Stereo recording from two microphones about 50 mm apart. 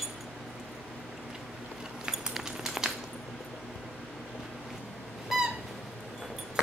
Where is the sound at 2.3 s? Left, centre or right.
Centre.